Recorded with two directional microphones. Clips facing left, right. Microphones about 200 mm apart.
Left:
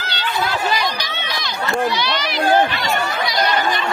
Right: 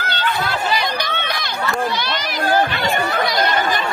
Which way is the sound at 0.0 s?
55° right (ahead or behind).